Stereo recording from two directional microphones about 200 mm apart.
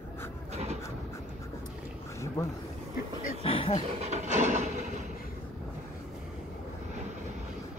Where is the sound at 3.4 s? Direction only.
30° left (ahead or behind).